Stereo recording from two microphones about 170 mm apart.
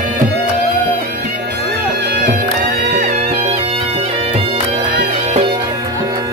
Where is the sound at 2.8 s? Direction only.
70° right (ahead or behind).